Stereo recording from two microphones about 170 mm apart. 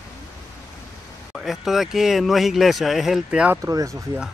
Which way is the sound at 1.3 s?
Centre (ahead or behind).